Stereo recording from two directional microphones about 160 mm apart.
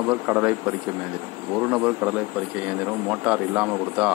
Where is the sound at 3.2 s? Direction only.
5° right (ahead or behind).